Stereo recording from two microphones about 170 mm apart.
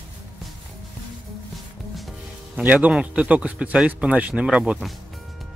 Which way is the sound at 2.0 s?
Centre (ahead or behind).